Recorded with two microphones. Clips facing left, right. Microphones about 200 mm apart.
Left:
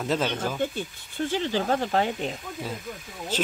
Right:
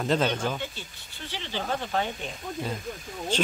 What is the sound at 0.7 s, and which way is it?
Speech, 50° left (ahead or behind).